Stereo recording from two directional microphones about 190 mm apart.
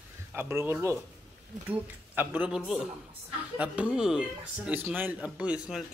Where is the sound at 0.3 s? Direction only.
10° right (ahead or behind).